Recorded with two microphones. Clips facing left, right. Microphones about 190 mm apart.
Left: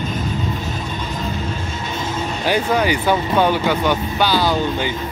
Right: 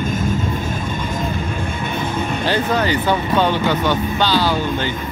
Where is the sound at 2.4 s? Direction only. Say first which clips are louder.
Left 2 dB; 10° left (ahead or behind).